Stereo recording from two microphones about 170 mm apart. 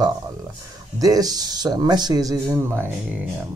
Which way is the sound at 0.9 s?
20° right (ahead or behind).